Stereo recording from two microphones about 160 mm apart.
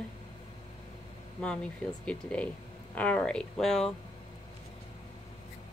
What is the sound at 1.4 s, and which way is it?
Speech, 5° left (ahead or behind).